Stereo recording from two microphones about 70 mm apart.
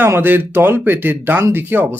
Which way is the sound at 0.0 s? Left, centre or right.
Right.